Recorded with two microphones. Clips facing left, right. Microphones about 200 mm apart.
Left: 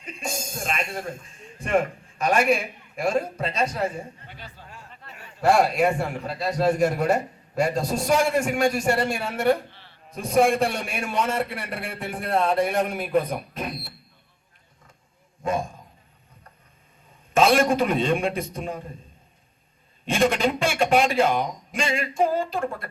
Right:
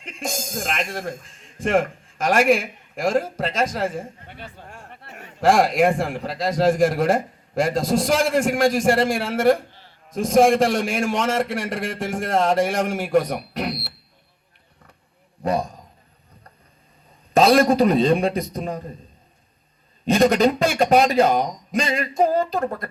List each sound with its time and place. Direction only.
0.0 s speech: 90° right
4.3 s a sound: 55° right (ahead or behind)
5.4 s a man's voice: 90° right; by 13.9 s 75° right (ahead or behind)
15.4 s a man's voice: 40° right (ahead or behind)
17.3 s a man's voice: 35° right (ahead or behind)
20.1 s a man's voice: 40° right (ahead or behind)